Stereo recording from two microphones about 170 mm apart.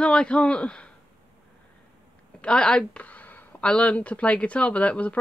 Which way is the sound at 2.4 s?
5° left (ahead or behind).